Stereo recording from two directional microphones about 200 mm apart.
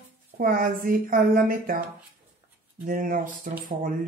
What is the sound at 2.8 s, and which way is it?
Speech, 45° right (ahead or behind).